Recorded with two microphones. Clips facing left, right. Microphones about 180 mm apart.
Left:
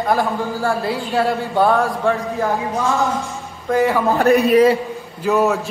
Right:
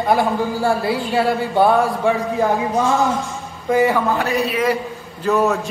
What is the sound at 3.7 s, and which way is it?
Speech, centre (ahead or behind).